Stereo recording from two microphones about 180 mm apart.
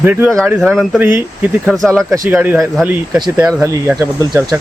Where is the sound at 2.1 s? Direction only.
10° right (ahead or behind).